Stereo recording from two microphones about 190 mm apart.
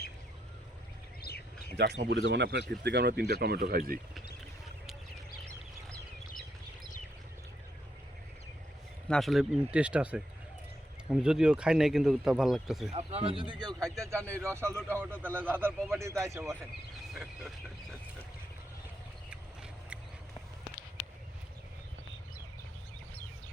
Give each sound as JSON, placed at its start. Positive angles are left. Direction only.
{"t": 1.3, "sound": "bird", "side_deg": 55}
{"t": 1.7, "sound": "speech", "side_deg": -60}
{"t": 9.0, "sound": "speech", "side_deg": 0}
{"t": 12.9, "sound": "a man's voice", "side_deg": -35}